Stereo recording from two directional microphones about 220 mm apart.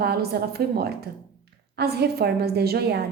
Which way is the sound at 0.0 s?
45° right (ahead or behind).